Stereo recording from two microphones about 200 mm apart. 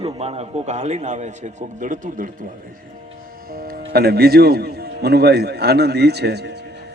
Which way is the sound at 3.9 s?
50° right (ahead or behind).